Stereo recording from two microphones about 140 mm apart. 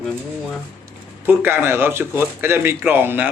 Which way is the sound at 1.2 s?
15° right (ahead or behind).